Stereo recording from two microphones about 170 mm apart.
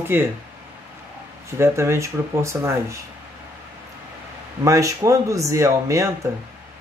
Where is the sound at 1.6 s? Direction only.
15° right (ahead or behind).